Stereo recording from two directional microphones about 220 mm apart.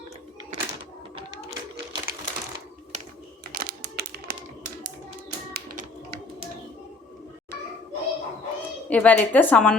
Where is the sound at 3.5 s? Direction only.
40° right (ahead or behind).